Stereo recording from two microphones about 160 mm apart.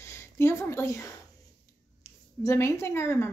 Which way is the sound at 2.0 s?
20° left (ahead or behind).